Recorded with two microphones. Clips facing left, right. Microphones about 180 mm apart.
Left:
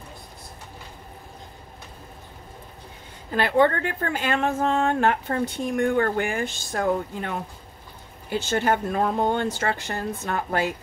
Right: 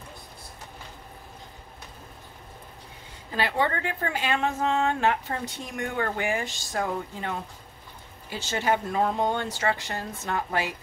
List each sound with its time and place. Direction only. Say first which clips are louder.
3.3 s a woman's voice: left 7 dB; 55° left (ahead or behind)